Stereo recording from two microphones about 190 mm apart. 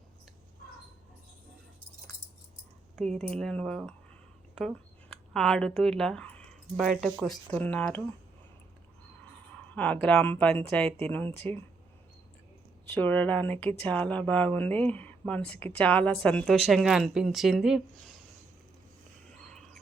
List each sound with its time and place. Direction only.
3.1 s speech: 35° right (ahead or behind)
3.3 s a woman's voice: 5° left (ahead or behind)
9.5 s speech: 5° left (ahead or behind)
12.9 s a woman's voice: 10° left (ahead or behind)
19.3 s a sound: 5° left (ahead or behind)